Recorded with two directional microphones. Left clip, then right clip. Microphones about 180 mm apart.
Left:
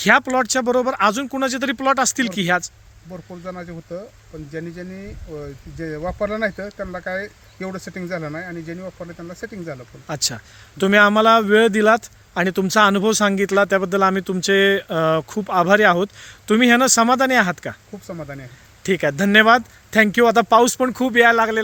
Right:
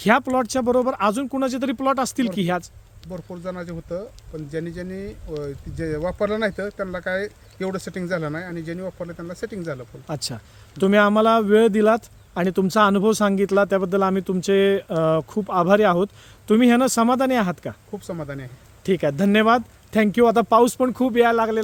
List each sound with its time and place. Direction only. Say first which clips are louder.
0.0 s speech: left 3 dB; 10° right (ahead or behind)
3.1 s speech: right 1 dB; 30° right (ahead or behind)
10.1 s a man's voice: left 6 dB; 5° right (ahead or behind)
18.0 s speech: even; 35° right (ahead or behind)
18.8 s a man's voice: left 2 dB; centre (ahead or behind)